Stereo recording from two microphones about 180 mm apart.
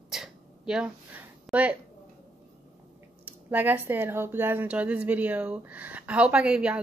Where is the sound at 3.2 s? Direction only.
10° right (ahead or behind).